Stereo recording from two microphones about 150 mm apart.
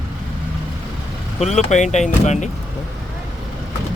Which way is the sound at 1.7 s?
50° left (ahead or behind).